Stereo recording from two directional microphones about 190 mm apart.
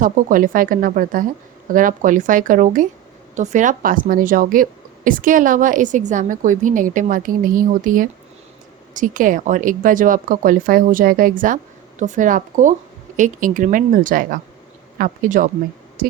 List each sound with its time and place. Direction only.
0.0 s a woman's voice: 45° right (ahead or behind)